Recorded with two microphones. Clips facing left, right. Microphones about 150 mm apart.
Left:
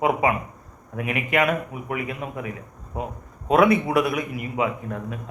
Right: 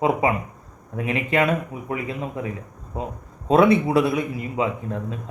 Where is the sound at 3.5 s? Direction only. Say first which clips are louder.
Right 2 dB; 30° right (ahead or behind).